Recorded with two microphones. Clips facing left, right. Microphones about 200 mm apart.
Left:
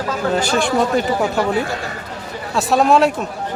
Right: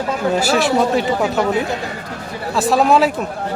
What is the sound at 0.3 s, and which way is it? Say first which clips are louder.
A man's voice: right 2 dB; 5° right (ahead or behind).